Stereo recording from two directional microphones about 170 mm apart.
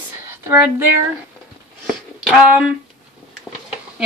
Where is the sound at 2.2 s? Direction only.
Centre (ahead or behind).